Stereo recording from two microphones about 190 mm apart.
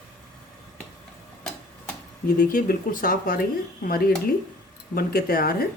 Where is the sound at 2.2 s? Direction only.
45° left (ahead or behind).